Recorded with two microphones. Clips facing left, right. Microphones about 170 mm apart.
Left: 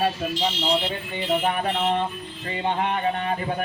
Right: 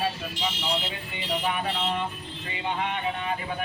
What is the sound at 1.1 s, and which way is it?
Speech, 50° left (ahead or behind).